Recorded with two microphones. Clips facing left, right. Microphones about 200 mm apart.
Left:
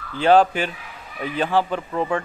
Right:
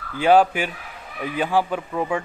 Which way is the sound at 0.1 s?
10° right (ahead or behind).